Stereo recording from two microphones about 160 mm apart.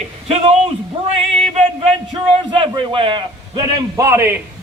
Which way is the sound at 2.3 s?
30° right (ahead or behind).